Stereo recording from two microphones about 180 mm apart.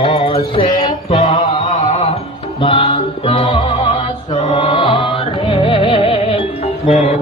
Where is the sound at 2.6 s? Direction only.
30° left (ahead or behind).